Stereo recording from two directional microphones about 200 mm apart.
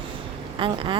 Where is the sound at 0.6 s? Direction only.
25° right (ahead or behind).